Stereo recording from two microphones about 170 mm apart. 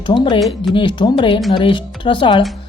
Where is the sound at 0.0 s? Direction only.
25° left (ahead or behind).